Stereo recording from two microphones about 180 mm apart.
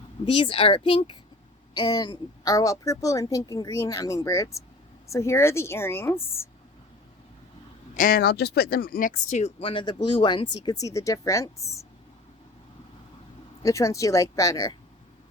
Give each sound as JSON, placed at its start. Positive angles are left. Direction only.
{"t": 0.3, "sound": "a woman's voice", "side_deg": 30}
{"t": 7.9, "sound": "speech", "side_deg": 55}
{"t": 13.6, "sound": "a woman's voice", "side_deg": 20}